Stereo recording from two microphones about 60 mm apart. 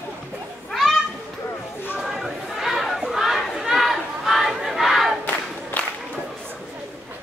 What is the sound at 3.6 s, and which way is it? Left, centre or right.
Battle cry, centre.